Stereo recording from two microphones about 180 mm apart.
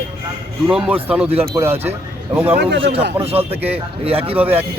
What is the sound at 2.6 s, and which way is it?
Speech, 75° right (ahead or behind).